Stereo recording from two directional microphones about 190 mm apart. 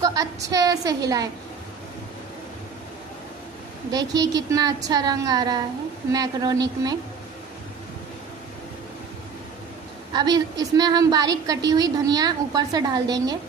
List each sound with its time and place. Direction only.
0.0 s a woman's voice: 20° right (ahead or behind)
4.4 s a woman's voice: 20° right (ahead or behind)
10.1 s a woman's voice: 20° right (ahead or behind)